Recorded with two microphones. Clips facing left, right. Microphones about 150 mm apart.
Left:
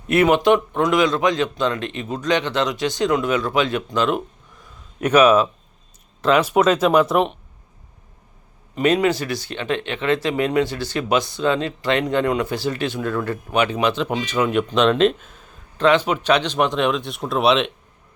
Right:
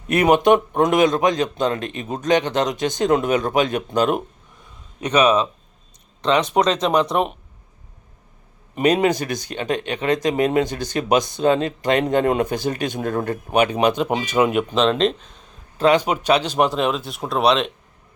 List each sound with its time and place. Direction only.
0.1 s speech: 45° right (ahead or behind)
5.0 s speech: 5° left (ahead or behind)
9.0 s speech: 20° right (ahead or behind)
9.2 s speech: 45° right (ahead or behind)
14.1 s speech: 15° right (ahead or behind)
14.8 s speech: centre (ahead or behind)
16.0 s speech: 10° right (ahead or behind)